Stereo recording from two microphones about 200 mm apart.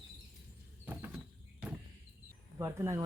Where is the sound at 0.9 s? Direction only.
10° right (ahead or behind).